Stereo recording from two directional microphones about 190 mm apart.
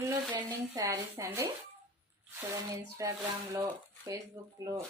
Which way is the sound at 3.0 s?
15° right (ahead or behind).